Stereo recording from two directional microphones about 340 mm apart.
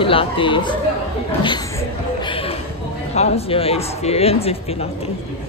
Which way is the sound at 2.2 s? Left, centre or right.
Centre.